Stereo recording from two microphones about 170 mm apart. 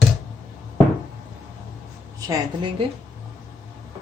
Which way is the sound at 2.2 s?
25° right (ahead or behind).